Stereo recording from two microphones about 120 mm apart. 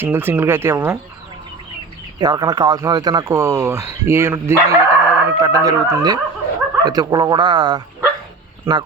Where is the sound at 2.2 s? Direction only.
35° right (ahead or behind).